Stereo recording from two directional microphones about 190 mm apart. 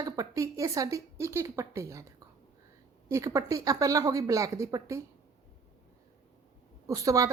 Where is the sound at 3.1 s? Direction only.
15° right (ahead or behind).